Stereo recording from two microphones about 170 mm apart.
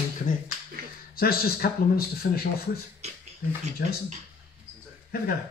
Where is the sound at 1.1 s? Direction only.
65° left (ahead or behind).